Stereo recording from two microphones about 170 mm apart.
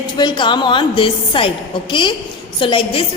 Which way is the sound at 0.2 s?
25° left (ahead or behind).